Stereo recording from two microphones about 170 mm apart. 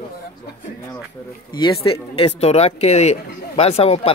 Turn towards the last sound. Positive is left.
turn(degrees=35)  # may be behind; listen again after turning